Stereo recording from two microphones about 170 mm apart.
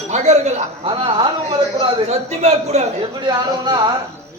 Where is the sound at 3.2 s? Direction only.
25° right (ahead or behind).